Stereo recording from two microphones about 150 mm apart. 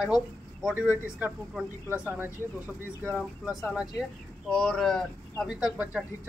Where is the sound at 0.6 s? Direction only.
5° right (ahead or behind).